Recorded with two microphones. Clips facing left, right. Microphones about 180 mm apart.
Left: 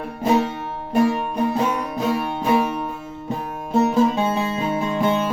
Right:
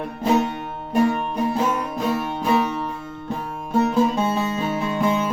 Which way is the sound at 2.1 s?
10° left (ahead or behind).